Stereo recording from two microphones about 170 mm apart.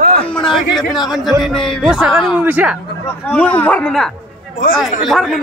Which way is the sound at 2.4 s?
10° right (ahead or behind).